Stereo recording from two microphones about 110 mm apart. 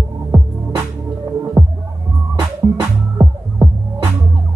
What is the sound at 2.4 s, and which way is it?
Music, 30° right (ahead or behind).